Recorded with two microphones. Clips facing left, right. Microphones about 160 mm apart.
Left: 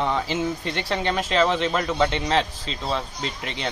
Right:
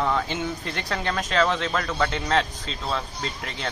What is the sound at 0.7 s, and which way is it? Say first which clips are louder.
Speech: left 3 dB; 25° left (ahead or behind).